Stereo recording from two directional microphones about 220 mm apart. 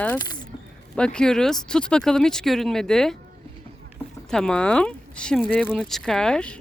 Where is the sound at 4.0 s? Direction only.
15° left (ahead or behind).